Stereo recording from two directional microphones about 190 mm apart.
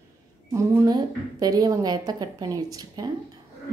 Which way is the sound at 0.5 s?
15° right (ahead or behind).